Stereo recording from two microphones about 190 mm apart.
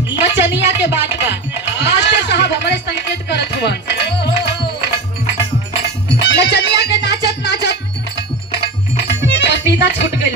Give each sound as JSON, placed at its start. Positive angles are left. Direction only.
{"t": 0.2, "sound": "music", "side_deg": -10}
{"t": 1.8, "sound": "music", "side_deg": 65}
{"t": 6.2, "sound": "music", "side_deg": 60}